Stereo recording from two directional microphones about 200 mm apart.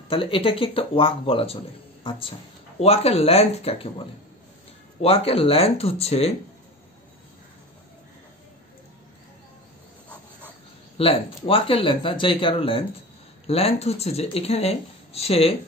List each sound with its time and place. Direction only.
0.1 s speech: 25° left (ahead or behind)
11.0 s speech: 30° left (ahead or behind)